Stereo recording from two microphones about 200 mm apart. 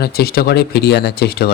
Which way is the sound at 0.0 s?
50° left (ahead or behind).